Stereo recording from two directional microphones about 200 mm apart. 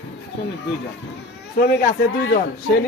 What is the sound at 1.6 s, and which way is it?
Speech, 55° left (ahead or behind).